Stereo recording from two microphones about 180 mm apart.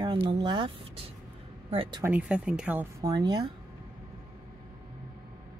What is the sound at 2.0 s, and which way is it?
Speech, 5° right (ahead or behind).